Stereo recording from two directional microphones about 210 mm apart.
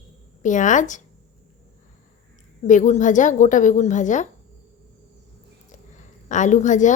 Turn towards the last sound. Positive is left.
turn(degrees=35)  # may be behind; listen again after turning